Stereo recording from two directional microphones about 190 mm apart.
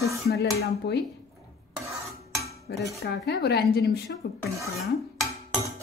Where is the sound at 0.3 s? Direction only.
55° left (ahead or behind).